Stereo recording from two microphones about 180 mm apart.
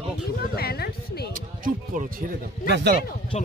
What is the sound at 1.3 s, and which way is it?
Speech, 50° right (ahead or behind).